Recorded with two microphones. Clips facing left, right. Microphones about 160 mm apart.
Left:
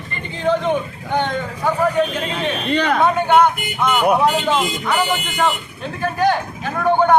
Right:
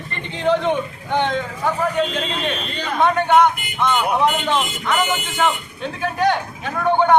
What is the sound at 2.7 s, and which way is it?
Speech, 70° left (ahead or behind).